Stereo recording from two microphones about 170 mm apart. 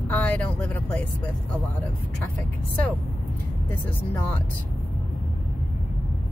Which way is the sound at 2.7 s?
10° left (ahead or behind).